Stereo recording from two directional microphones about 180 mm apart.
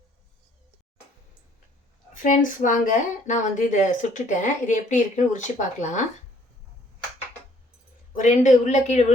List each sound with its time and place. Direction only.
2.2 s speech: 45° left (ahead or behind)
8.2 s speech: 45° left (ahead or behind)